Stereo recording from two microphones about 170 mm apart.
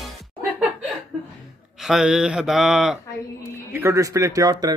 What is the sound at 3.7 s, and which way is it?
A man's voice, 15° right (ahead or behind).